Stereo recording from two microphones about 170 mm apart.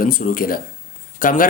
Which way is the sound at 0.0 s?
55° left (ahead or behind).